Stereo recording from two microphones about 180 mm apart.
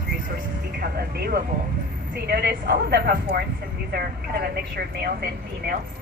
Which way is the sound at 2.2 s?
60° right (ahead or behind).